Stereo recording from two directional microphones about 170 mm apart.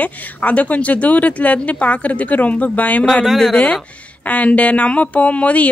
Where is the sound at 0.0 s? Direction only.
10° left (ahead or behind).